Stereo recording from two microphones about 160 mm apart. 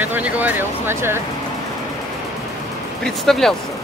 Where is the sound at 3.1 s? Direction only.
5° left (ahead or behind).